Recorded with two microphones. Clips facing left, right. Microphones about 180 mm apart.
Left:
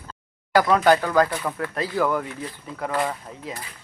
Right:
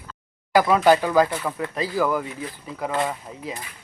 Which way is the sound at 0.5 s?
5° right (ahead or behind).